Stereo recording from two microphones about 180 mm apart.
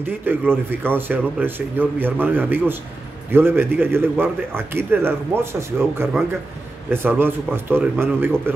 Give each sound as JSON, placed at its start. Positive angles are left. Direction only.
{"t": 0.3, "sound": "a man's voice", "side_deg": -10}